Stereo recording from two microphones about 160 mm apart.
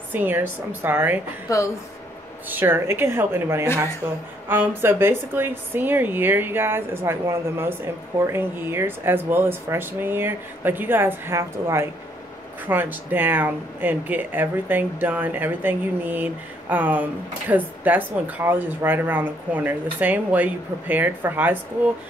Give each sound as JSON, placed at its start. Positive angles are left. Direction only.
{"t": 0.1, "sound": "speech", "side_deg": -10}
{"t": 1.5, "sound": "speech", "side_deg": 20}
{"t": 2.5, "sound": "speech", "side_deg": -15}